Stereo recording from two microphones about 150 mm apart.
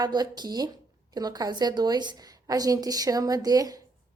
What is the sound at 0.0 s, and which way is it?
A woman's voice, 30° right (ahead or behind).